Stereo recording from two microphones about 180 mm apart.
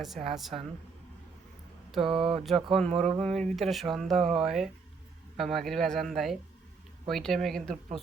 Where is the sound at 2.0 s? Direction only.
30° right (ahead or behind).